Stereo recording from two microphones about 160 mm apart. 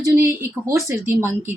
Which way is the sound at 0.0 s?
15° right (ahead or behind).